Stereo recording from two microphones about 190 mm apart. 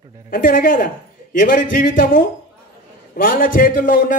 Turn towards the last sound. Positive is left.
turn(degrees=45)  # may be behind; listen again after turning